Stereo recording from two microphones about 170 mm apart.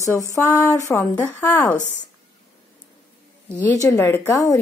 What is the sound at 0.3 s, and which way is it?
A woman's voice, 20° left (ahead or behind).